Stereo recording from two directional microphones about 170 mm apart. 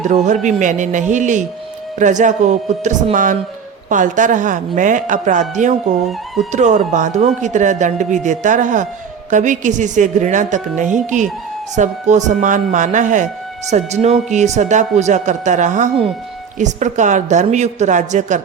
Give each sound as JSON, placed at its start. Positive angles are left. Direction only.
{"t": 0.1, "sound": "speech", "side_deg": -45}
{"t": 6.1, "sound": "speech", "side_deg": 0}
{"t": 6.5, "sound": "speech", "side_deg": -45}